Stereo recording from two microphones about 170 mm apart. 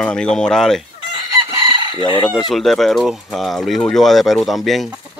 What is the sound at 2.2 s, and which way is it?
Speech, centre (ahead or behind).